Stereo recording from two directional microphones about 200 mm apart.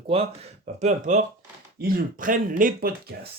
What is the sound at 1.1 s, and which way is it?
Speech, 40° right (ahead or behind).